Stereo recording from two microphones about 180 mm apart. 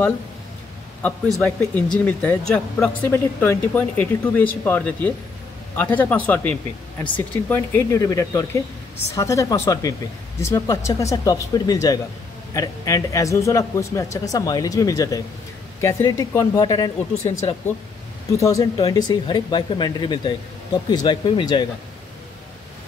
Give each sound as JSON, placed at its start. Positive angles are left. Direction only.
{"t": 1.0, "sound": "speech", "side_deg": 15}
{"t": 18.3, "sound": "speech", "side_deg": 15}